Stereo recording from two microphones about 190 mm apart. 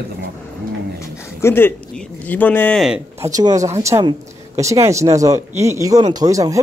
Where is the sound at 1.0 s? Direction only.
15° left (ahead or behind).